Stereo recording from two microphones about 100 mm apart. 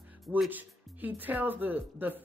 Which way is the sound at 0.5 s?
15° right (ahead or behind).